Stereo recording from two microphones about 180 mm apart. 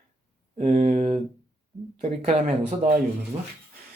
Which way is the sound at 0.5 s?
45° right (ahead or behind).